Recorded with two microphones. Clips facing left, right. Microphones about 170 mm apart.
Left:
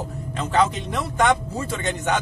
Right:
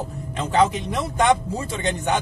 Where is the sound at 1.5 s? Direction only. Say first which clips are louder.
Right 1 dB; 15° right (ahead or behind).